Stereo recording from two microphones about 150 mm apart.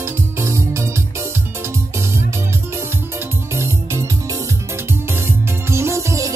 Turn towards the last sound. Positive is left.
turn(degrees=-20)  # may be behind; listen again after turning